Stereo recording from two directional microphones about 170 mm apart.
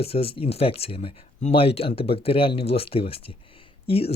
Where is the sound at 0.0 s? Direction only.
35° left (ahead or behind).